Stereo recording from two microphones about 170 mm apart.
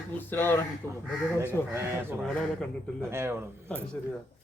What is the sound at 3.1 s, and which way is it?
Speech, 15° right (ahead or behind).